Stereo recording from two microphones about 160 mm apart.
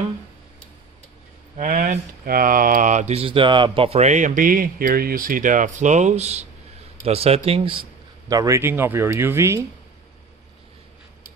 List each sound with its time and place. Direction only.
1.6 s speech: 55° right (ahead or behind); by 7.8 s 35° right (ahead or behind)
8.3 s speech: 20° right (ahead or behind)